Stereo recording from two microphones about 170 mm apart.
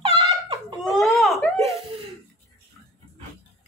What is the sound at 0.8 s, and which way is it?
Speech, centre (ahead or behind).